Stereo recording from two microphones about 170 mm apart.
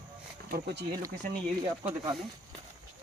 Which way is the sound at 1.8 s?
15° right (ahead or behind).